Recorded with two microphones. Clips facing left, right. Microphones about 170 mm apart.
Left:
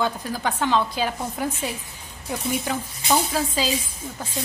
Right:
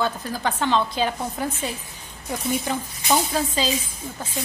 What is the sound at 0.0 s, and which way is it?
A woman's voice, 10° left (ahead or behind).